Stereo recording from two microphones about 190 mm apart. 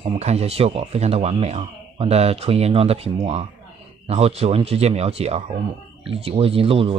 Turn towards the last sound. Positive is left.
turn(degrees=-30)  # may be behind; listen again after turning